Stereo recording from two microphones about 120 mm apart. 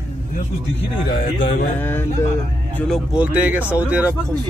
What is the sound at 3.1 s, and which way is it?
Speech, 10° right (ahead or behind).